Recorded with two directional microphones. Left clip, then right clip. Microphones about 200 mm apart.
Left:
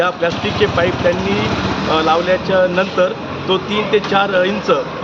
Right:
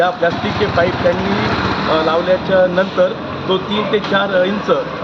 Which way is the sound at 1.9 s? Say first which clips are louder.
Left 2 dB; centre (ahead or behind).